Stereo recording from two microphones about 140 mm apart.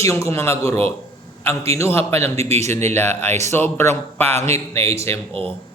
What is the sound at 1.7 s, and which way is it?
Speech, 20° left (ahead or behind).